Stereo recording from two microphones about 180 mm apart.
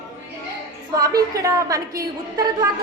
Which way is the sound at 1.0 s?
20° right (ahead or behind).